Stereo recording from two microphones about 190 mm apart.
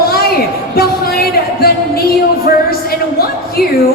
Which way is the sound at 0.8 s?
50° left (ahead or behind).